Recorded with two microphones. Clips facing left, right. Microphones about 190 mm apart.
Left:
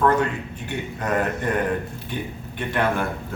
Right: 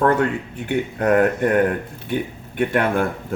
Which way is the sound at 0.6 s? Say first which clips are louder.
Right 8 dB; 60° right (ahead or behind).